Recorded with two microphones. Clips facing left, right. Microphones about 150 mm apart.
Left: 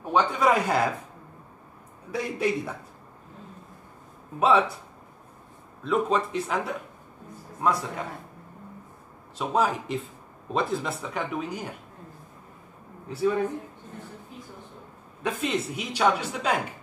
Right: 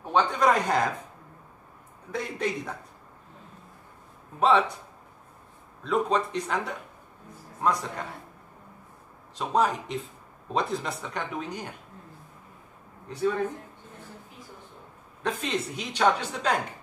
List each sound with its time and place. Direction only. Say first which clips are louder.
0.0 s speech: even; 5° left (ahead or behind)
2.1 s speech: left 3 dB; 10° left (ahead or behind)
4.4 s speech: left 1 dB; 5° left (ahead or behind)
5.9 s speech: left 1 dB; 5° left (ahead or behind)
9.4 s speech: even; 5° left (ahead or behind)
13.1 s speech: left 2 dB; 5° left (ahead or behind)
15.2 s speech: left 2 dB; 10° left (ahead or behind)